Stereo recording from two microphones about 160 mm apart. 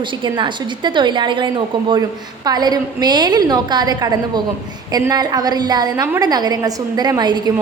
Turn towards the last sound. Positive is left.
turn(degrees=-25)  # may be behind; listen again after turning